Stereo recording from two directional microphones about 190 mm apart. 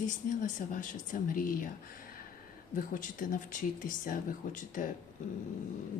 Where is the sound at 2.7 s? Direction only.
45° left (ahead or behind).